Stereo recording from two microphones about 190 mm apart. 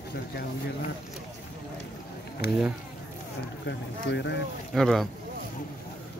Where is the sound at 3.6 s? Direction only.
70° left (ahead or behind).